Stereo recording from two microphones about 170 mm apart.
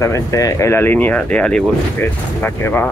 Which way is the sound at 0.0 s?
20° left (ahead or behind).